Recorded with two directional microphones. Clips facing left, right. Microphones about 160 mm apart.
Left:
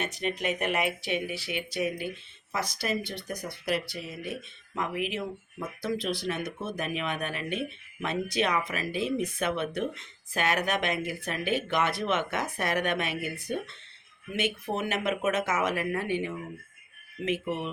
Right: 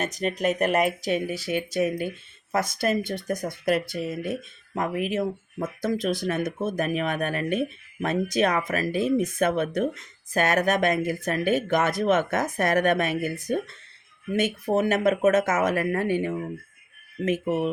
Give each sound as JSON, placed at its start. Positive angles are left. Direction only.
{"t": 0.0, "sound": "speech", "side_deg": -40}